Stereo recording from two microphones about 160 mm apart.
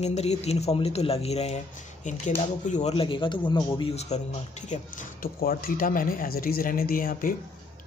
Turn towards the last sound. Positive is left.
turn(degrees=65)  # may be behind; listen again after turning